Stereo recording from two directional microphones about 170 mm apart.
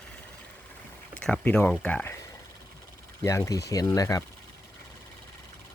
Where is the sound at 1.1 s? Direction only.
5° left (ahead or behind).